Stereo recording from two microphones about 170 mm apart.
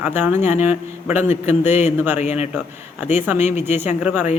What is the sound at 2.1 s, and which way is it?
Speech, 40° left (ahead or behind).